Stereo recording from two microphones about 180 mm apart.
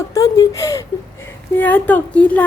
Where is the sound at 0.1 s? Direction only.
20° left (ahead or behind).